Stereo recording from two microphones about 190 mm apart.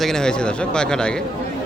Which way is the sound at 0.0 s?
5° left (ahead or behind).